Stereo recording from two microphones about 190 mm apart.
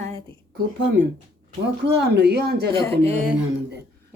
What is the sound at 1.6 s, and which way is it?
Speech, 60° right (ahead or behind).